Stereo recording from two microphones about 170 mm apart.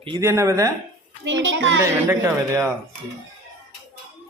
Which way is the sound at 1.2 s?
90° right.